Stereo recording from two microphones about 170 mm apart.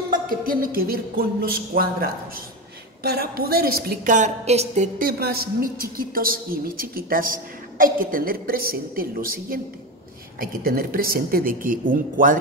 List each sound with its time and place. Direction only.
0.3 s a woman's voice: 55° right (ahead or behind)
4.9 s a woman's voice: 60° right (ahead or behind)